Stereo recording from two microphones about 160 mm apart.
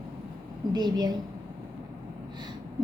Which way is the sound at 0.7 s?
25° right (ahead or behind).